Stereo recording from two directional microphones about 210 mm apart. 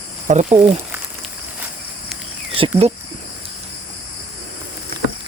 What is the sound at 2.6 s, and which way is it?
Speech, 30° right (ahead or behind).